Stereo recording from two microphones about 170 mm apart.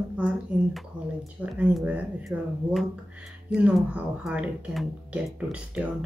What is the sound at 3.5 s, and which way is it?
Speech, 5° right (ahead or behind).